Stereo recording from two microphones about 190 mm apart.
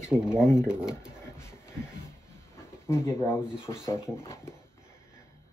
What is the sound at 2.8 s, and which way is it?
Speech, 15° left (ahead or behind).